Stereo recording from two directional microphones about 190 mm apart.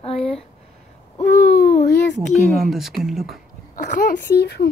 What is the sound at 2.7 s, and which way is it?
Speech, centre (ahead or behind).